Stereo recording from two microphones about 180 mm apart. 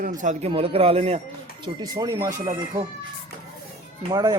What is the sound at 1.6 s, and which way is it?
Speech, 20° right (ahead or behind).